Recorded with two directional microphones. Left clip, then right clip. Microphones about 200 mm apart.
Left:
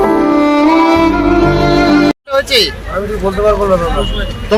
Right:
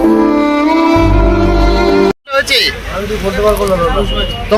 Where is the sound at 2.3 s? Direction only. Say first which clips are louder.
Even; centre (ahead or behind).